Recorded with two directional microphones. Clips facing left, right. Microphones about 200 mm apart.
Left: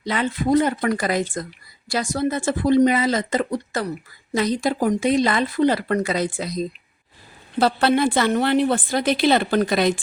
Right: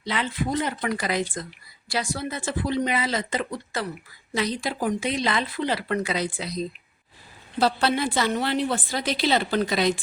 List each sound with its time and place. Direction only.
0.0 s a woman's voice: 45° left (ahead or behind)
7.6 s a woman's voice: 55° left (ahead or behind)